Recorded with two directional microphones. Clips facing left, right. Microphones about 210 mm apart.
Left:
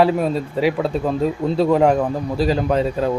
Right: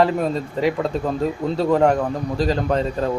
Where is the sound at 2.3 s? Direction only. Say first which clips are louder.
Left 2 dB; 10° left (ahead or behind).